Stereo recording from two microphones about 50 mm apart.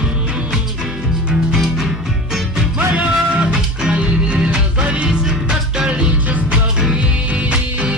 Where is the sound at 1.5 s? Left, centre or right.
Centre.